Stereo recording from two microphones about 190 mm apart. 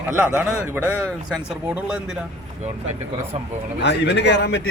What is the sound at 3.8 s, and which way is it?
Speech, 65° left (ahead or behind).